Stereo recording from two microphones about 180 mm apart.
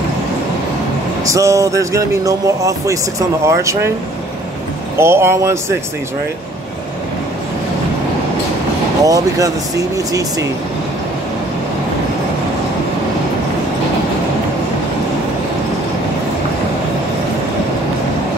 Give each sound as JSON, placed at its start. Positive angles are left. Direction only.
{"t": 1.2, "sound": "speech", "side_deg": -15}
{"t": 4.9, "sound": "speech", "side_deg": -15}
{"t": 9.0, "sound": "speech", "side_deg": -20}